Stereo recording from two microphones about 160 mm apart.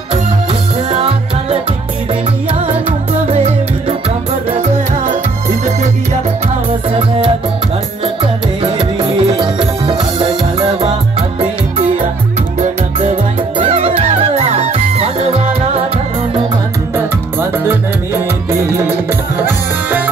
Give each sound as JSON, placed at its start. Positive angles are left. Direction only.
{"t": 0.8, "sound": "music", "side_deg": -35}
{"t": 8.7, "sound": "music", "side_deg": -30}
{"t": 12.5, "sound": "music", "side_deg": -40}
{"t": 16.9, "sound": "music", "side_deg": -15}